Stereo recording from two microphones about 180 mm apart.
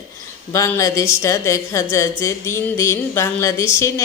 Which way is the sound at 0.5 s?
15° left (ahead or behind).